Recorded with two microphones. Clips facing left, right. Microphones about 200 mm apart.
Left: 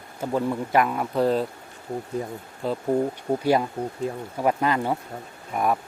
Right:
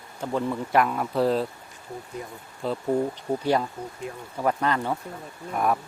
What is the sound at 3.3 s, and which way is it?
Speech, 10° left (ahead or behind).